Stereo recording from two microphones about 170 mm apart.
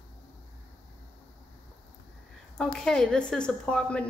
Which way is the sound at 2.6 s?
5° left (ahead or behind).